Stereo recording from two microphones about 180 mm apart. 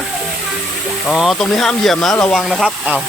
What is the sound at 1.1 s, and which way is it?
Speech, centre (ahead or behind).